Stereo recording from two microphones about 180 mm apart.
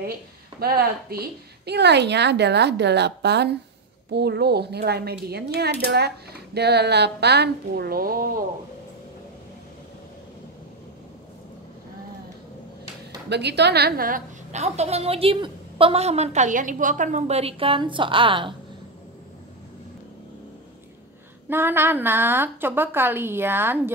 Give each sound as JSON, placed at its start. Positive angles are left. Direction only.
{"t": 0.6, "sound": "a woman's voice", "side_deg": -60}
{"t": 1.7, "sound": "a woman's voice", "side_deg": -70}
{"t": 13.3, "sound": "a woman's voice", "side_deg": -70}
{"t": 21.5, "sound": "a woman's voice", "side_deg": -10}